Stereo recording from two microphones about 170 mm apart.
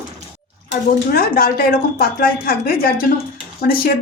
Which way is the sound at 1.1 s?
60° left (ahead or behind).